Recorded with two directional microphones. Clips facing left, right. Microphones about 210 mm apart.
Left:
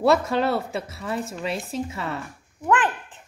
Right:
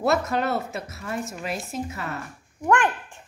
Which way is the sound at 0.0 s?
30° left (ahead or behind).